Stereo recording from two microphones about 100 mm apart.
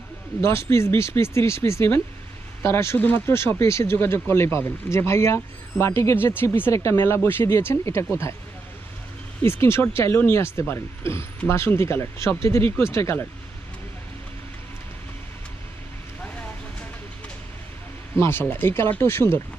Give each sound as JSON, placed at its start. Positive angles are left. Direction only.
{"t": 0.4, "sound": "speech", "side_deg": 25}
{"t": 9.4, "sound": "speech", "side_deg": 25}
{"t": 18.2, "sound": "speech", "side_deg": 20}